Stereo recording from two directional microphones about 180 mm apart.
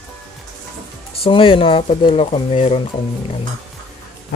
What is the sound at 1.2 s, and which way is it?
Speech, 30° left (ahead or behind).